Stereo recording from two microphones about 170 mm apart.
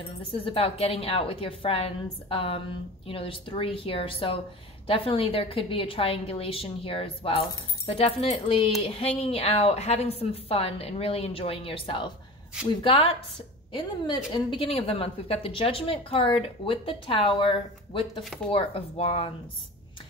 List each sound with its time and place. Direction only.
0.3 s a woman's voice: 35° left (ahead or behind)
13.7 s a woman's voice: 30° left (ahead or behind)